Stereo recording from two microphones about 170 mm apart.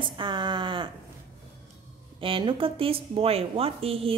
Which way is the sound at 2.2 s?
30° right (ahead or behind).